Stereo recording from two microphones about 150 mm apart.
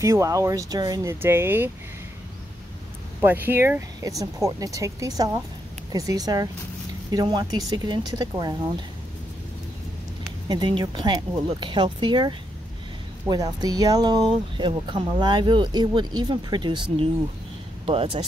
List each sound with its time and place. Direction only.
0.0 s speech: 20° right (ahead or behind)
1.2 s speech: 15° right (ahead or behind)
3.2 s speech: 15° right (ahead or behind)
10.5 s speech: 25° right (ahead or behind)
17.8 s speech: 35° right (ahead or behind)